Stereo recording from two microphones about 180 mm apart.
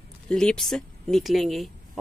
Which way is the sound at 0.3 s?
5° left (ahead or behind).